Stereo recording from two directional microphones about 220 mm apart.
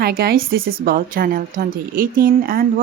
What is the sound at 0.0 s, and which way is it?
A woman's voice, 45° right (ahead or behind).